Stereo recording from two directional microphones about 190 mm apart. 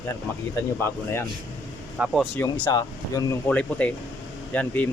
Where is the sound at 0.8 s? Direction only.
10° left (ahead or behind).